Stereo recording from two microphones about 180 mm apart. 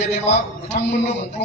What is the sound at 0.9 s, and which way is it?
Speech, 40° left (ahead or behind).